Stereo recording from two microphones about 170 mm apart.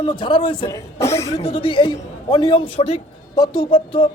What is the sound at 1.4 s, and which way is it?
A man's voice, 35° left (ahead or behind).